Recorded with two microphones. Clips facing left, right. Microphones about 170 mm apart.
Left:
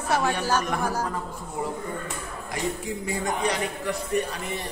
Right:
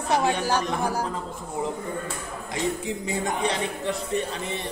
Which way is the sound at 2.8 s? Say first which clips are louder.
Right 1 dB; 25° right (ahead or behind).